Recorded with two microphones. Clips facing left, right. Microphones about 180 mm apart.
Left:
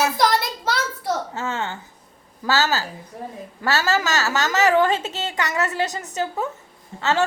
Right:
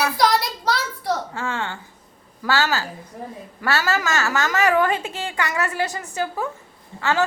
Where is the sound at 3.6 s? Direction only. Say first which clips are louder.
Left 1 dB; 25° left (ahead or behind).